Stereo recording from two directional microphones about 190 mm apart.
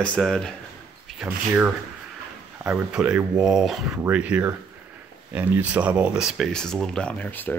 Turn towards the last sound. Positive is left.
turn(degrees=10)  # may be behind; listen again after turning